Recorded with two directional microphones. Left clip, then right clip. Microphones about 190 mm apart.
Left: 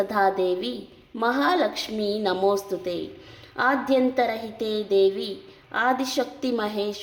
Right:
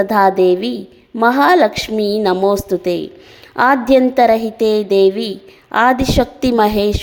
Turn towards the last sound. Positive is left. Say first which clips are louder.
# right 13 dB
turn(degrees=-45)  # may be behind; listen again after turning